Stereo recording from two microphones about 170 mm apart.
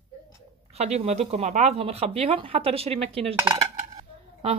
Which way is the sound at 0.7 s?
40° right (ahead or behind).